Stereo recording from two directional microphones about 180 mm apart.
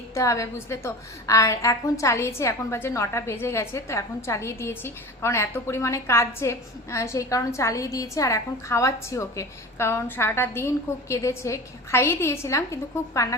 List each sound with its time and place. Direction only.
0.1 s a woman's voice: 15° left (ahead or behind)